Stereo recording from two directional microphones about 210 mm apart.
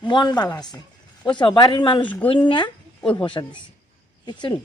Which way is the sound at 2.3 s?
25° left (ahead or behind).